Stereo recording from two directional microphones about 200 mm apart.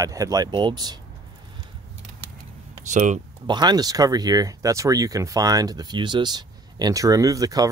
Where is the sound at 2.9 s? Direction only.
35° right (ahead or behind).